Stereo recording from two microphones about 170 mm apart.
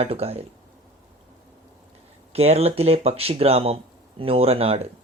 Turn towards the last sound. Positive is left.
turn(degrees=-35)  # may be behind; listen again after turning